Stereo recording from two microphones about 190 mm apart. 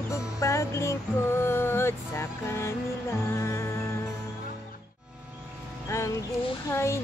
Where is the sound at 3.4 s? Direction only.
15° left (ahead or behind).